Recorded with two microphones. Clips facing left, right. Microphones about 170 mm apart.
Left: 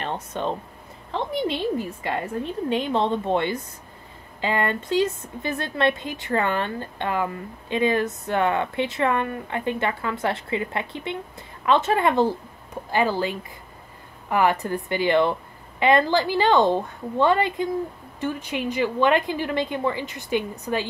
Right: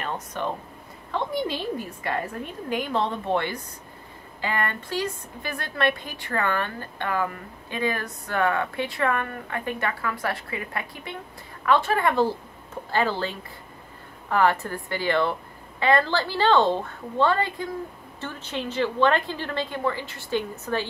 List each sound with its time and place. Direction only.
0.0 s a woman's voice: 25° left (ahead or behind)